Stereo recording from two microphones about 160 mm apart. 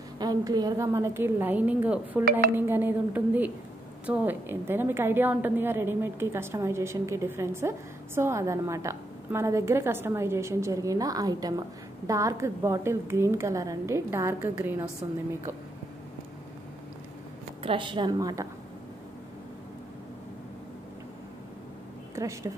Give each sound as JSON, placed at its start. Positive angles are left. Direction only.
{"t": 0.2, "sound": "a woman's voice", "side_deg": -25}
{"t": 17.6, "sound": "speech", "side_deg": -30}
{"t": 22.1, "sound": "speech", "side_deg": -20}